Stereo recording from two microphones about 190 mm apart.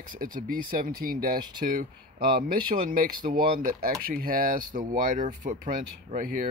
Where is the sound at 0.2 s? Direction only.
50° right (ahead or behind).